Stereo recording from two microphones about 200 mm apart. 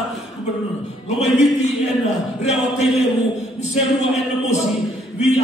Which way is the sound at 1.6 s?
35° left (ahead or behind).